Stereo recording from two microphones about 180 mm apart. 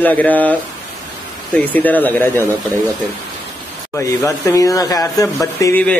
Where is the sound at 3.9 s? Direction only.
15° left (ahead or behind).